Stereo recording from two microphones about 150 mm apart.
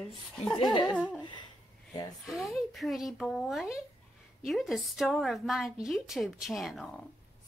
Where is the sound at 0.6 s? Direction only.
30° left (ahead or behind).